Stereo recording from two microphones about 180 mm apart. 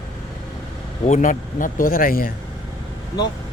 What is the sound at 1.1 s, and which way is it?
Speech, 45° left (ahead or behind).